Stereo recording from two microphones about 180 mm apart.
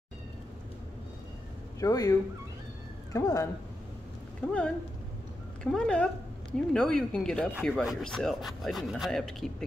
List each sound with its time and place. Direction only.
1.8 s speech: 20° left (ahead or behind)
4.4 s speech: 5° left (ahead or behind)